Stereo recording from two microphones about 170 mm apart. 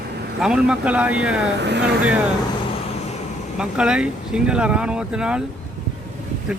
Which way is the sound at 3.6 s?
5° right (ahead or behind).